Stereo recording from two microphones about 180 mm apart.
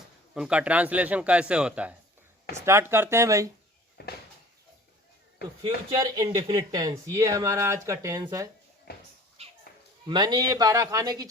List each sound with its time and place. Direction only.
0.3 s speech: 5° right (ahead or behind)
4.0 s a sound: 65° left (ahead or behind)
5.6 s speech: 25° right (ahead or behind)
8.9 s speech: 60° left (ahead or behind)
10.1 s speech: 25° right (ahead or behind)